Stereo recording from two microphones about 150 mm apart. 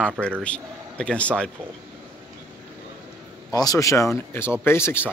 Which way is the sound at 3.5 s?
25° left (ahead or behind).